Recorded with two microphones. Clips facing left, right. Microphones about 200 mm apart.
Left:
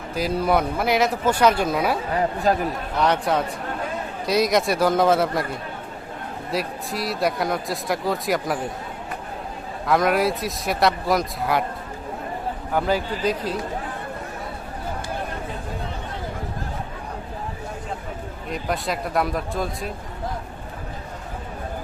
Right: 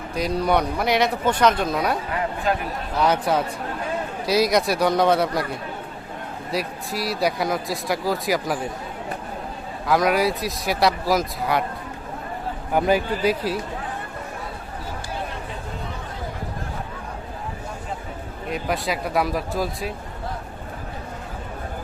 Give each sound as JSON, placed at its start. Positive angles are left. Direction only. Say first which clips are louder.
{"t": 0.1, "sound": "speech", "louder": "even", "side_deg": 5}
{"t": 2.5, "sound": "a man's voice", "louder": "left 3 dB", "side_deg": 40}
{"t": 3.0, "sound": "speech", "louder": "right 1 dB", "side_deg": 0}
{"t": 6.5, "sound": "speech", "louder": "even", "side_deg": 0}
{"t": 9.8, "sound": "speech", "louder": "even", "side_deg": 0}
{"t": 12.7, "sound": "speech", "louder": "right 3 dB", "side_deg": -15}
{"t": 18.5, "sound": "speech", "louder": "right 1 dB", "side_deg": 0}